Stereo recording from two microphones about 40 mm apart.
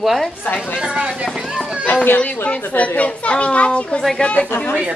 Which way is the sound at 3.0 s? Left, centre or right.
Left.